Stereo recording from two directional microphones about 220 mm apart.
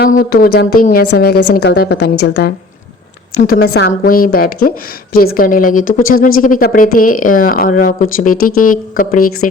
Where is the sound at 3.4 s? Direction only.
45° left (ahead or behind).